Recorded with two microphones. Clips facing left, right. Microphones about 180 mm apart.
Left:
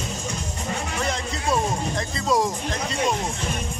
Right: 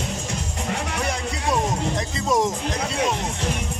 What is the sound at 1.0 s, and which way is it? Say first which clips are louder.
Music: left 1 dB; 15° right (ahead or behind).